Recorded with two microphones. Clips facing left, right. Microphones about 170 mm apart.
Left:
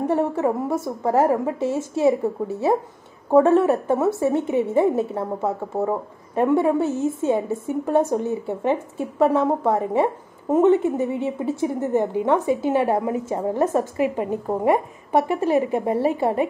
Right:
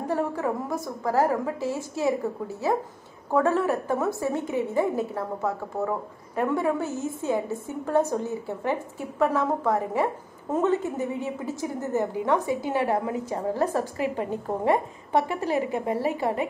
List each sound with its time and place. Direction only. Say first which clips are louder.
0.1 s a woman's voice: left 3 dB; 25° left (ahead or behind)